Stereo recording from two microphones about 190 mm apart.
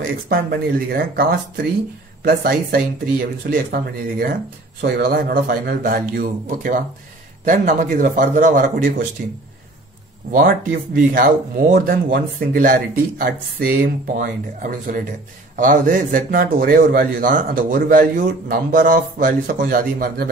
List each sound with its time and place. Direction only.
0.3 s speech: 55° right (ahead or behind)
10.3 s speech: 45° right (ahead or behind)